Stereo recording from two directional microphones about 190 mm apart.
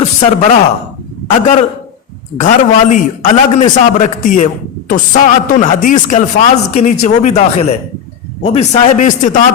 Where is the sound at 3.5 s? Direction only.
40° left (ahead or behind).